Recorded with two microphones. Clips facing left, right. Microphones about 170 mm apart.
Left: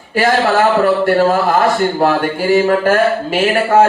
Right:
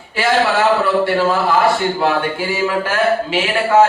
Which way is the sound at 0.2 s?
45° left (ahead or behind).